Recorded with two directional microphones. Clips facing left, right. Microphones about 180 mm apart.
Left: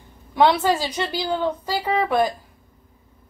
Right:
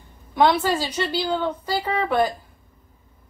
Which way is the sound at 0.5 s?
20° left (ahead or behind).